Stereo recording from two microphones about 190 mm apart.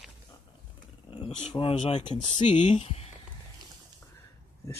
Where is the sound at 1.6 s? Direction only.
30° left (ahead or behind).